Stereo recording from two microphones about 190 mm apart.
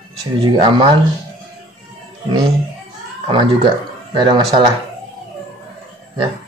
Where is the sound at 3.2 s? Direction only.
25° right (ahead or behind).